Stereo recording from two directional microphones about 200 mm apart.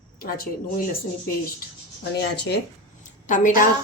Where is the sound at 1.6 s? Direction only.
55° left (ahead or behind).